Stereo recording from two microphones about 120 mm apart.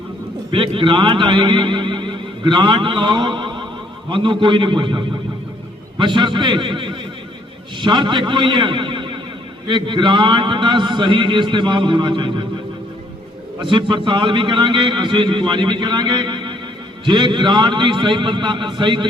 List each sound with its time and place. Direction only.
0.5 s a man's voice: 45° right (ahead or behind)
13.7 s a man's voice: 40° right (ahead or behind)